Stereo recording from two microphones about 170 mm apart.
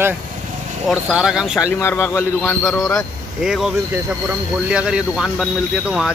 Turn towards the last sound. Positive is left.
turn(degrees=-5)  # may be behind; listen again after turning